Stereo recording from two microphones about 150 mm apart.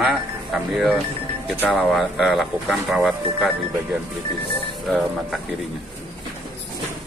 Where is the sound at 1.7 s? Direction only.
Centre (ahead or behind).